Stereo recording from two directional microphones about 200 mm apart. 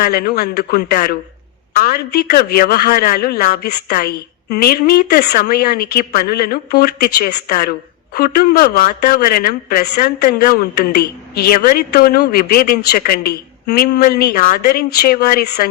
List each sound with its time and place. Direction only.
0.0 s a woman's voice: 50° left (ahead or behind)